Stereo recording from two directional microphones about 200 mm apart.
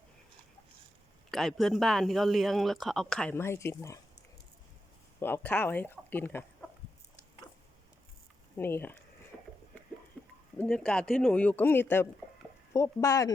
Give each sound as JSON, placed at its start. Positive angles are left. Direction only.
{"t": 1.3, "sound": "speech", "side_deg": 0}
{"t": 5.2, "sound": "speech", "side_deg": 10}
{"t": 8.5, "sound": "a man's voice", "side_deg": 10}
{"t": 10.6, "sound": "a man's voice", "side_deg": 5}